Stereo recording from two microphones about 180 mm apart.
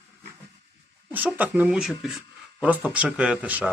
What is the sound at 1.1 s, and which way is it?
Speech, 10° right (ahead or behind).